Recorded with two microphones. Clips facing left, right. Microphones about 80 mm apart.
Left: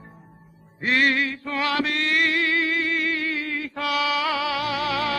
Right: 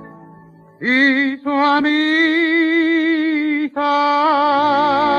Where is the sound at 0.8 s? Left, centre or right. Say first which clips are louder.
Right 7 dB; right.